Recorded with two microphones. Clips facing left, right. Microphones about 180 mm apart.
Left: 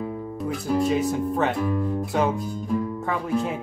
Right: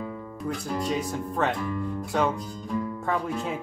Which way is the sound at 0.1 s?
25° left (ahead or behind).